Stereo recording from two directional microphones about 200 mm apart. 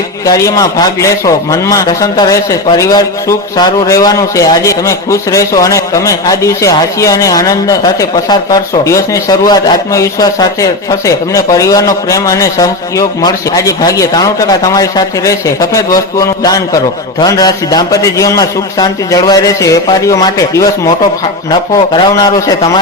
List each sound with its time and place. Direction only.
0.3 s a man's voice: 15° left (ahead or behind)